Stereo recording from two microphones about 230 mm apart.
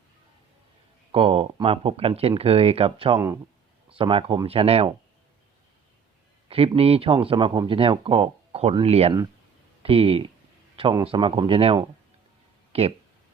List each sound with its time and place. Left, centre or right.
1.1 s speech: right
3.2 s speech: centre
3.8 s speech: right
6.5 s speech: right